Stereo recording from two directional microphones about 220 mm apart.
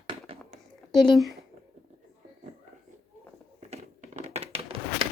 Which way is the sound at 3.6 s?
30° right (ahead or behind).